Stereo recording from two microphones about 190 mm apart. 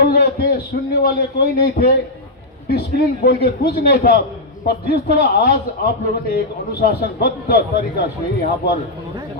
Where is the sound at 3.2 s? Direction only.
60° left (ahead or behind).